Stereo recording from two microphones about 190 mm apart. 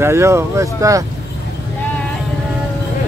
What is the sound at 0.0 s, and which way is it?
Speech, 15° right (ahead or behind).